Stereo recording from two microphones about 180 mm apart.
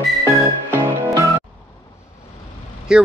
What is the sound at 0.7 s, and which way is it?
Music, 20° right (ahead or behind).